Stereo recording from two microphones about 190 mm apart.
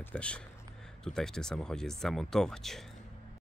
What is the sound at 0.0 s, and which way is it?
Speech, 5° left (ahead or behind).